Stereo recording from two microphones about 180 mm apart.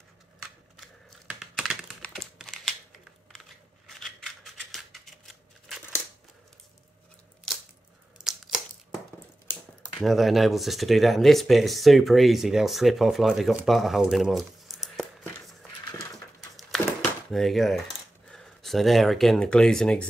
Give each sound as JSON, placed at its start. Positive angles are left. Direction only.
{"t": 0.4, "sound": "typing", "side_deg": -5}
{"t": 3.3, "sound": "scissors", "side_deg": 0}
{"t": 7.5, "sound": "squish", "side_deg": 0}
{"t": 8.2, "sound": "a sound", "side_deg": -5}
{"t": 10.0, "sound": "speech", "side_deg": 0}
{"t": 15.8, "sound": "a sound", "side_deg": 20}
{"t": 17.3, "sound": "speech", "side_deg": 0}